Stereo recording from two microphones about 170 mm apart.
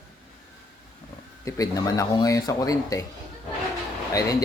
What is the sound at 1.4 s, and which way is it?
Speech, 20° left (ahead or behind).